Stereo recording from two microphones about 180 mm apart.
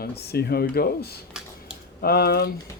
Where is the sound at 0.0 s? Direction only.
65° left (ahead or behind).